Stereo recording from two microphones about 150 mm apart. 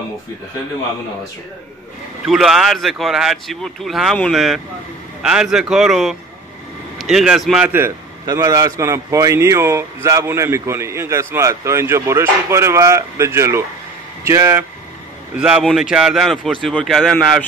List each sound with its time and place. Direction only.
2.2 s a man's voice: centre (ahead or behind); by 14.6 s 20° right (ahead or behind)
15.3 s speech: 5° right (ahead or behind)